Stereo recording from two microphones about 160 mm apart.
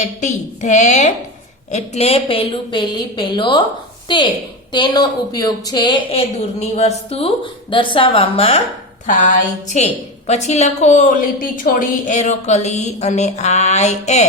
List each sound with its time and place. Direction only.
0.0 s a woman's voice: 50° left (ahead or behind)
9.0 s a woman's voice: 50° left (ahead or behind)